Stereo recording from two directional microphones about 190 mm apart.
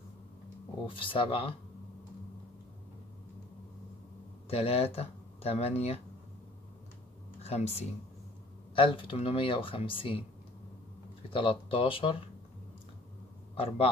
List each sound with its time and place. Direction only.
0.8 s speech: 25° left (ahead or behind)
4.5 s speech: 30° left (ahead or behind)
7.4 s speech: 35° left (ahead or behind)
11.2 s speech: 25° left (ahead or behind)